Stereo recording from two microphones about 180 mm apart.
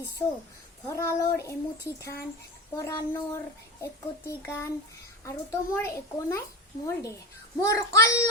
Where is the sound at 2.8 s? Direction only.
15° left (ahead or behind).